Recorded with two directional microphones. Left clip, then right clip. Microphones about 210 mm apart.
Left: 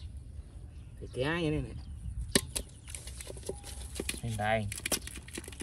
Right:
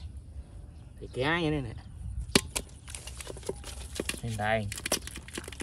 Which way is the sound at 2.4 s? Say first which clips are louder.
Right 4 dB; centre (ahead or behind).